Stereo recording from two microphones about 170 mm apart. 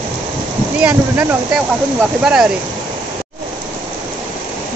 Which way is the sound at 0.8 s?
10° right (ahead or behind).